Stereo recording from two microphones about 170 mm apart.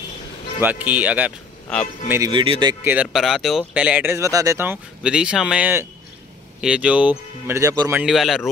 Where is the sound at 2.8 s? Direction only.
10° right (ahead or behind).